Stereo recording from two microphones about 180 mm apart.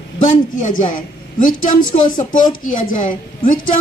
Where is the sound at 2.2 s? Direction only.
45° left (ahead or behind).